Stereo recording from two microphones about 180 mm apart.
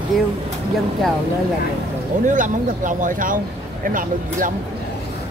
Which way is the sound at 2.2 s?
45° right (ahead or behind).